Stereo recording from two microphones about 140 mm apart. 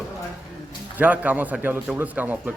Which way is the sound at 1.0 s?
10° right (ahead or behind).